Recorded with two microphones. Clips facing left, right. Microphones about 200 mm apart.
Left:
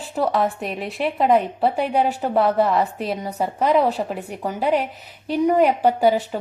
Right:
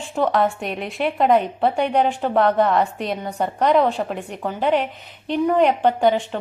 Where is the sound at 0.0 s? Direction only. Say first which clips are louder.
Right 1 dB; 5° left (ahead or behind).